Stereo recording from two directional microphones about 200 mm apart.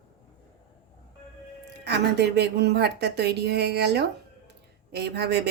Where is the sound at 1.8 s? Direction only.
55° right (ahead or behind).